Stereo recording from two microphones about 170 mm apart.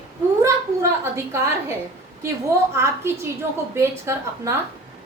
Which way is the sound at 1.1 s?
15° right (ahead or behind).